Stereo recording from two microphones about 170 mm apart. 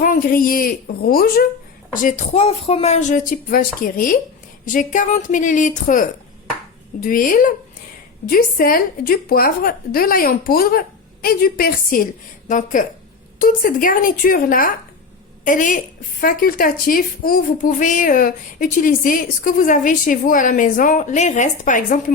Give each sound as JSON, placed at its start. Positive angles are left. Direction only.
{"t": 0.0, "sound": "a woman's voice", "side_deg": 55}
{"t": 12.5, "sound": "a woman's voice", "side_deg": 50}